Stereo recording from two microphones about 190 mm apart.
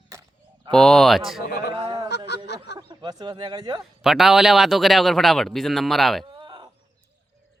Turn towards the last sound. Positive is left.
turn(degrees=-25)  # may be behind; listen again after turning